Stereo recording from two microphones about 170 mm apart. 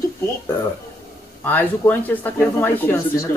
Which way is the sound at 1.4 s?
10° left (ahead or behind).